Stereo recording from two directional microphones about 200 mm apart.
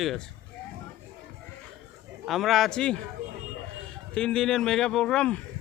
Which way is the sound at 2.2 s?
Centre (ahead or behind).